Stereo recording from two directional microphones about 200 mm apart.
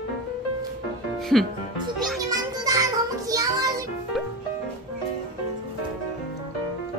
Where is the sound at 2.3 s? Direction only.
15° right (ahead or behind).